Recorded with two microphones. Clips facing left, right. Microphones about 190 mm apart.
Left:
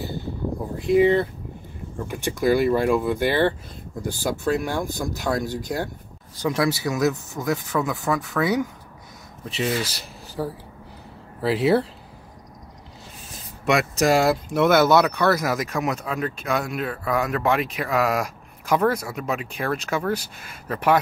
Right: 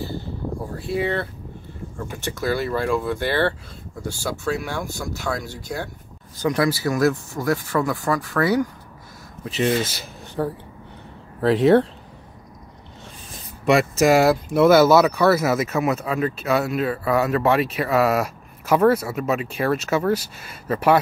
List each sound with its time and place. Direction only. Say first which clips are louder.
0.8 s speech: left 7 dB; 15° left (ahead or behind)
6.3 s speech: right 2 dB; centre (ahead or behind)
13.3 s a sound: right 3 dB; centre (ahead or behind)
14.1 s speech: right 3 dB; 5° right (ahead or behind)